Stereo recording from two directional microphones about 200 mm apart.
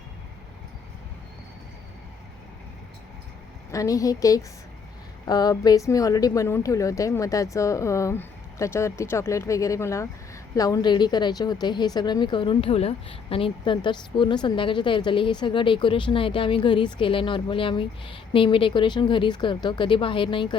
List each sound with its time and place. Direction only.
3.7 s a woman's voice: 15° left (ahead or behind)